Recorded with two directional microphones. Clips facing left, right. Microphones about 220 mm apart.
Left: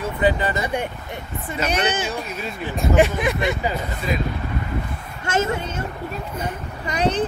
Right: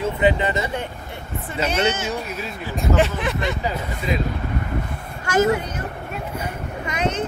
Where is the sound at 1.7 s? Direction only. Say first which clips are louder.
Right 1 dB; 15° left (ahead or behind).